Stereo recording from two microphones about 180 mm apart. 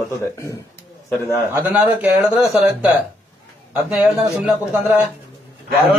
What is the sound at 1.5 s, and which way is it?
Speech, 10° right (ahead or behind).